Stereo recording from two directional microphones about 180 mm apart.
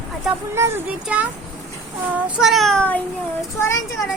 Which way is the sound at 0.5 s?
15° right (ahead or behind).